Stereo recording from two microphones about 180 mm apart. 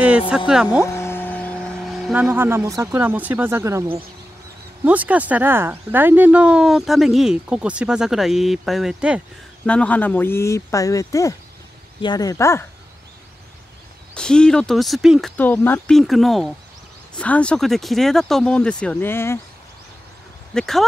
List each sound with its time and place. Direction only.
0.5 s speech: 5° right (ahead or behind)
0.8 s speech: 15° left (ahead or behind); by 3.8 s 15° right (ahead or behind)
4.8 s speech: 10° right (ahead or behind)
9.7 s speech: 5° left (ahead or behind)
14.1 s speech: 5° left (ahead or behind)
16.0 s speech: centre (ahead or behind)
20.5 s speech: centre (ahead or behind)